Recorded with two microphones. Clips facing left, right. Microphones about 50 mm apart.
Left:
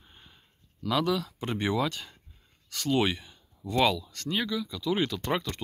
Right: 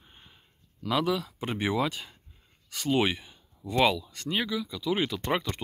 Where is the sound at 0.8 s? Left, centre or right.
Centre.